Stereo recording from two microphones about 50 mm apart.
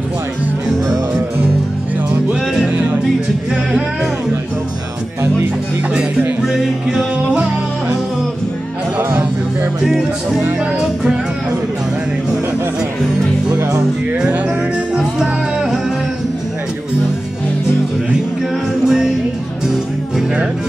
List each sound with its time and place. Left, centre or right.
2.7 s music: right
6.4 s music: centre
9.8 s music: centre
18.9 s music: centre